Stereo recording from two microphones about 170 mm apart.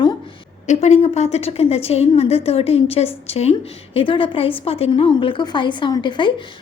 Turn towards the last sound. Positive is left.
turn(degrees=30)  # may be behind; listen again after turning